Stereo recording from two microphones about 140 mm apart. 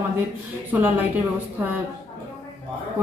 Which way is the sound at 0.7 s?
15° right (ahead or behind).